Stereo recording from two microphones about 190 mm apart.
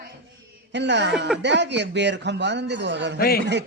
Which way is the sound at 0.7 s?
65° right (ahead or behind).